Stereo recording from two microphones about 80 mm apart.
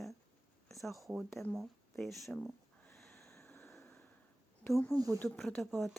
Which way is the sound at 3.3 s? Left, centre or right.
Left.